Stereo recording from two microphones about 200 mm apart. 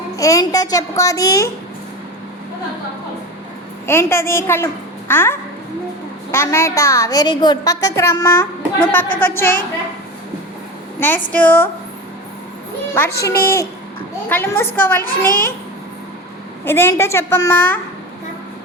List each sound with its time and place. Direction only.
0.2 s a woman's voice: 15° left (ahead or behind)
3.8 s a woman's voice: 10° left (ahead or behind)
11.3 s a woman's voice: 10° left (ahead or behind)
13.2 s a woman's voice: 10° left (ahead or behind)
15.3 s a child's voice: 45° left (ahead or behind)
16.6 s a woman's voice: 10° left (ahead or behind)